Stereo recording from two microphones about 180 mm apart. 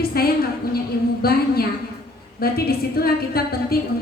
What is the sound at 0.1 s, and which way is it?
A woman's voice, 60° left (ahead or behind).